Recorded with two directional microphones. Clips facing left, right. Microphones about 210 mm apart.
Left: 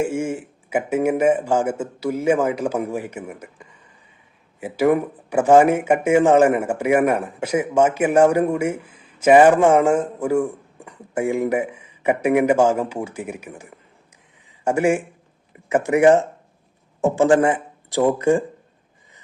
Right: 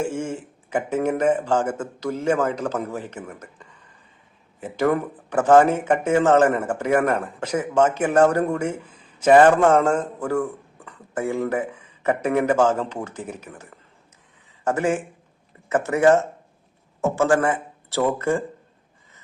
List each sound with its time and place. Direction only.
0.0 s speech: 10° left (ahead or behind)